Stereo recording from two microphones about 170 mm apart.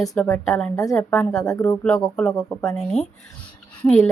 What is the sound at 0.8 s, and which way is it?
Speech, 15° left (ahead or behind).